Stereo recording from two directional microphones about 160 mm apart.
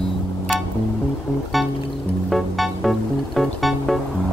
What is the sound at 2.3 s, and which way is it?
Music, centre (ahead or behind).